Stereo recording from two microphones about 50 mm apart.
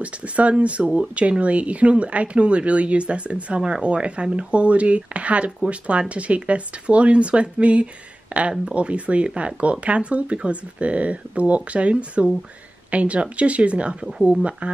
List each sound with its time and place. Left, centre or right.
0.0 s speech: right